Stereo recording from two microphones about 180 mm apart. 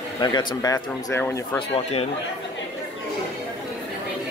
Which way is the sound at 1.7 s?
35° left (ahead or behind).